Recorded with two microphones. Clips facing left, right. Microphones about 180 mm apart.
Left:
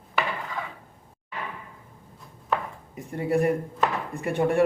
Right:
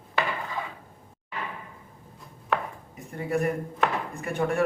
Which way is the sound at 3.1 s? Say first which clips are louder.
Left 4 dB; 30° left (ahead or behind).